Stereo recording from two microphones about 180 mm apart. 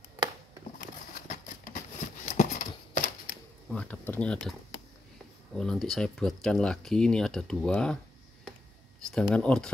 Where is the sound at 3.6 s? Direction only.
5° left (ahead or behind).